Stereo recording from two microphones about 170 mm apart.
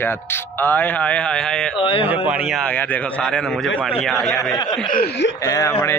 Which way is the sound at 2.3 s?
5° right (ahead or behind).